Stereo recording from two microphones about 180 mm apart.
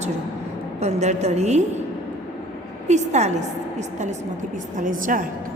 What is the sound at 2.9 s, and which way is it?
Speech, 40° right (ahead or behind).